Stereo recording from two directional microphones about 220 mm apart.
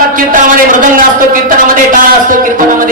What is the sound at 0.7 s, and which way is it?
A man's voice, 35° right (ahead or behind).